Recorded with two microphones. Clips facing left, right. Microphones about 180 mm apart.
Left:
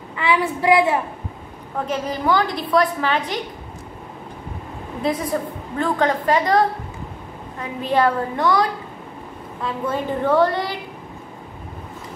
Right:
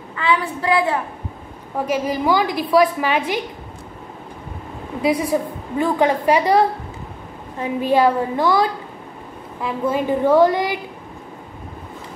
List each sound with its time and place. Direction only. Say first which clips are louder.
0.2 s a woman's voice: left 1 dB; 20° left (ahead or behind)
1.8 s a woman's voice: right 3 dB; 10° right (ahead or behind)
5.0 s a woman's voice: right 4 dB; 10° right (ahead or behind)
7.9 s a woman's voice: right 2 dB; 10° right (ahead or behind)
9.6 s a woman's voice: right 3 dB; 10° right (ahead or behind)